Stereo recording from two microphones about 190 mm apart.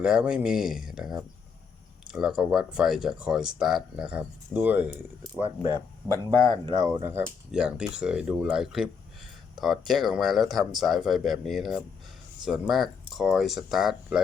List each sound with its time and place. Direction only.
0.0 s speech: 5° right (ahead or behind)
6.1 s speech: 15° left (ahead or behind)
6.7 s speech: 25° right (ahead or behind); by 14.2 s centre (ahead or behind)